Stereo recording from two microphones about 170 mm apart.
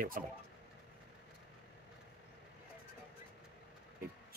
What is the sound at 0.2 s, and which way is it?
Speech, 55° right (ahead or behind).